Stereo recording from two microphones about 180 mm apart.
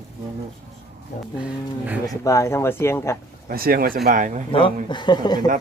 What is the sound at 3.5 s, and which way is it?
Speech, 55° right (ahead or behind).